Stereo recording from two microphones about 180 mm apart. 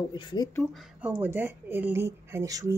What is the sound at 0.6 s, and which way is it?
Speech, centre (ahead or behind).